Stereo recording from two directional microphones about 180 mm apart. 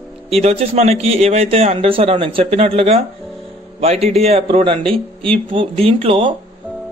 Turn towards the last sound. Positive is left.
turn(degrees=-30)  # may be behind; listen again after turning